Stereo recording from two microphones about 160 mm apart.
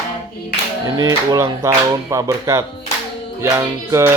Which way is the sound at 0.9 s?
25° right (ahead or behind).